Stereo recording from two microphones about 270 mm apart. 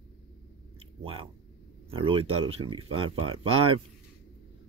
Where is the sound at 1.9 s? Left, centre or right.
Centre.